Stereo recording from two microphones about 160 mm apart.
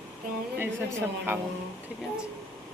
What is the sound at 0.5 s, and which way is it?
Speech, 15° right (ahead or behind).